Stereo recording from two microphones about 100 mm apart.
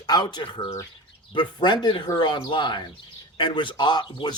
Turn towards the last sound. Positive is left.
turn(degrees=45)  # may be behind; listen again after turning